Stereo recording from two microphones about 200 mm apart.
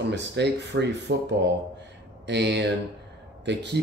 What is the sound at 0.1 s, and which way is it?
Speech, 60° right (ahead or behind).